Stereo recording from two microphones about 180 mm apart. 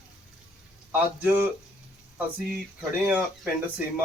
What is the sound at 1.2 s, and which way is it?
Speech, 10° right (ahead or behind).